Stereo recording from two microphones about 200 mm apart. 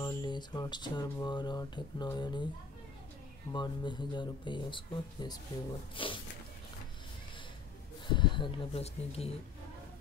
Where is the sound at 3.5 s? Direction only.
20° left (ahead or behind).